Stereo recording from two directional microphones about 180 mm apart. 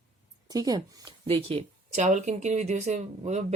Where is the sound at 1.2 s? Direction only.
35° right (ahead or behind).